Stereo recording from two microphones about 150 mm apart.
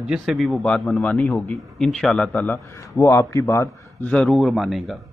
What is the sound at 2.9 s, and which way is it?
Speech, 20° left (ahead or behind).